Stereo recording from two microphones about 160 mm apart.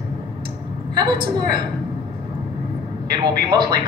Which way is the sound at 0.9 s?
25° right (ahead or behind).